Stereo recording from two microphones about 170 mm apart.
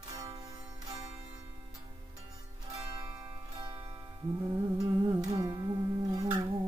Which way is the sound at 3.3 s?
25° right (ahead or behind).